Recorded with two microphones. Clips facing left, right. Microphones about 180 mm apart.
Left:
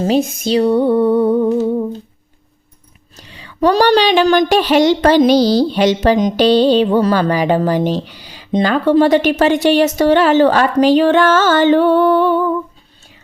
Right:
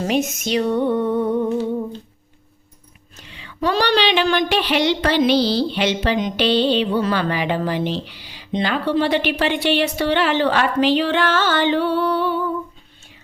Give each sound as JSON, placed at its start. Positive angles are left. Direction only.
{"t": 0.0, "sound": "music", "side_deg": 30}
{"t": 3.2, "sound": "speech", "side_deg": 40}